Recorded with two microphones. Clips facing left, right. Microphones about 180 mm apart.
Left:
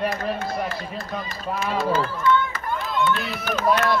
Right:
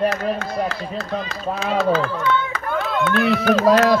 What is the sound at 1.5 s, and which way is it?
Speech, 75° right (ahead or behind).